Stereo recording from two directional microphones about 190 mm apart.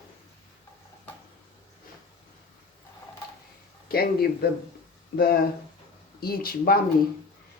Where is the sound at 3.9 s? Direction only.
55° left (ahead or behind).